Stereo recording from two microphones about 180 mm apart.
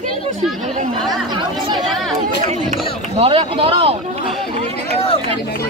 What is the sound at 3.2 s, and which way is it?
Speech, 30° right (ahead or behind).